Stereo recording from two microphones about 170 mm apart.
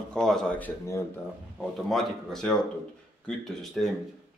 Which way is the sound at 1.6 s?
Centre (ahead or behind).